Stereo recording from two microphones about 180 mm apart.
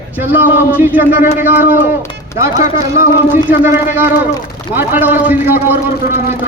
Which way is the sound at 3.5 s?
15° right (ahead or behind).